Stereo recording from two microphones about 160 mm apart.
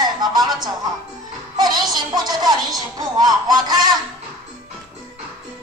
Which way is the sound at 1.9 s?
25° right (ahead or behind).